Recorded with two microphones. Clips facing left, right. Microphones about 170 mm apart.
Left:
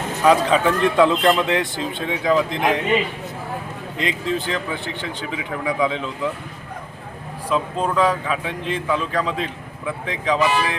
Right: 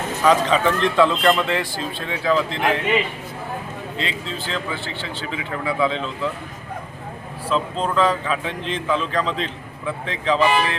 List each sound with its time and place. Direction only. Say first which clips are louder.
0.3 s a man's voice: left 1 dB; 10° left (ahead or behind)
3.9 s a man's voice: left 7 dB; 15° left (ahead or behind)
7.5 s a man's voice: left 1 dB; 10° left (ahead or behind)